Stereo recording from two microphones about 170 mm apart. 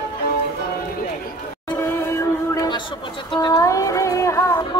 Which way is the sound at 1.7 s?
15° left (ahead or behind).